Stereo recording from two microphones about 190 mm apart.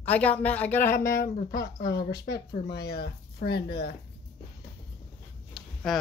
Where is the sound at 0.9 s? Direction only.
45° left (ahead or behind).